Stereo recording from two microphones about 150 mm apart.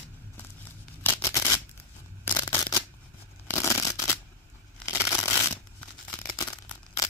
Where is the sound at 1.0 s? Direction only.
20° left (ahead or behind).